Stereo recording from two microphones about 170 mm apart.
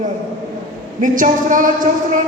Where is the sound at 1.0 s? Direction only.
50° right (ahead or behind).